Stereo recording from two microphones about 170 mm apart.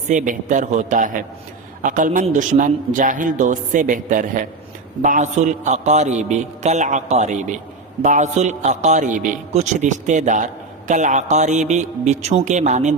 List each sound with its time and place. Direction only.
0.1 s a man's voice: 50° right (ahead or behind)